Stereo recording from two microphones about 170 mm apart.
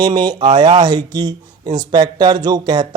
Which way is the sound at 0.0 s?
25° right (ahead or behind).